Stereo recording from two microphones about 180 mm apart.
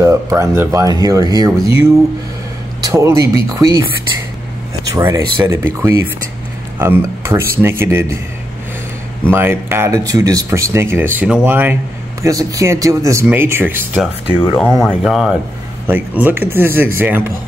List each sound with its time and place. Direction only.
0.0 s speech: 15° right (ahead or behind)
4.8 s speech: 20° right (ahead or behind)
9.3 s speech: 10° right (ahead or behind)
14.8 s speech: centre (ahead or behind)